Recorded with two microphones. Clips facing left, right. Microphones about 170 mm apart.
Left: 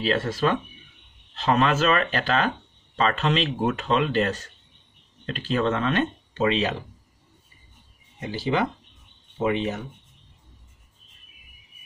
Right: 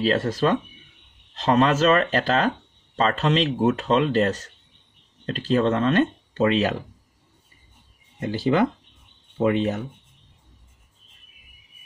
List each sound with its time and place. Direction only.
0.0 s speech: 40° right (ahead or behind)
8.2 s speech: 55° right (ahead or behind)